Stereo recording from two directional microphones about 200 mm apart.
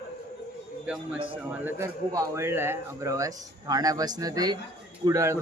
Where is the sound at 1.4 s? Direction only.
10° right (ahead or behind).